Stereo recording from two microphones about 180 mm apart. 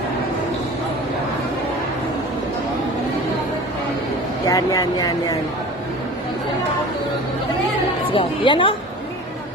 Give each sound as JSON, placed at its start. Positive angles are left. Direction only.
{"t": 4.4, "sound": "speech", "side_deg": 20}
{"t": 8.1, "sound": "speech", "side_deg": 30}